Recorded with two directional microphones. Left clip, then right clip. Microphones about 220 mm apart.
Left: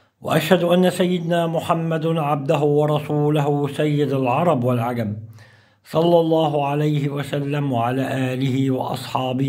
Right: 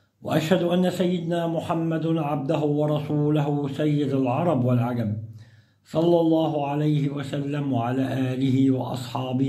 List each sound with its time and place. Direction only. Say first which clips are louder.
0.3 s a man's voice: left 6 dB; 35° left (ahead or behind)